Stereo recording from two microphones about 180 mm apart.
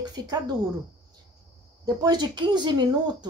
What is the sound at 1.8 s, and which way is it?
A woman's voice, 20° right (ahead or behind).